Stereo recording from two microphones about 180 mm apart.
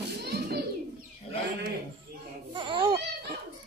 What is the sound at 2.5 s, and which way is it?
Crying, 30° right (ahead or behind).